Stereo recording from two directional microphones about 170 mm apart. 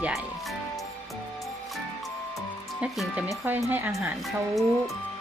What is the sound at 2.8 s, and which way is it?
Speech, 5° right (ahead or behind).